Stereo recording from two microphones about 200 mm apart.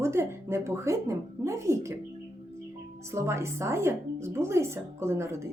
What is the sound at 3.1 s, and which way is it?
Speech, 15° right (ahead or behind).